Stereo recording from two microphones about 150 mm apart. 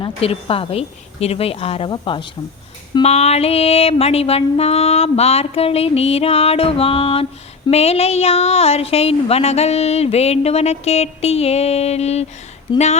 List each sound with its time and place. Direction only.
0.0 s music: 40° left (ahead or behind)
3.0 s music: 45° left (ahead or behind)
7.7 s speech: 40° left (ahead or behind)